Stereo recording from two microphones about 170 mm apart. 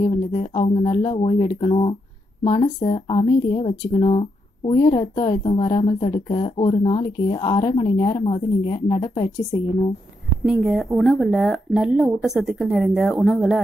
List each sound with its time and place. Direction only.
0.3 s speech: 30° left (ahead or behind)
10.4 s speech: centre (ahead or behind)